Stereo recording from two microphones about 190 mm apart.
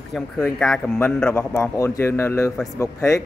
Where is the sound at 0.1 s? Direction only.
5° left (ahead or behind).